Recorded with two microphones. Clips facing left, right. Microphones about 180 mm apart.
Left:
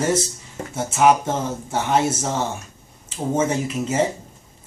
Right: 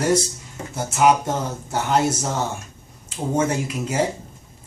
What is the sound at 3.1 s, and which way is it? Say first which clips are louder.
Speech: left 1 dB; 5° left (ahead or behind).